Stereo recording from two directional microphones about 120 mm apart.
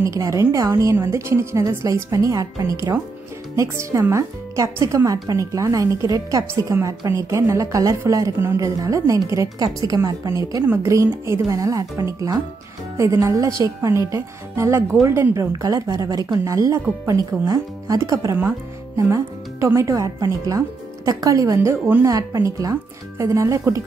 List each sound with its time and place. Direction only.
0.0 s speech: 25° right (ahead or behind)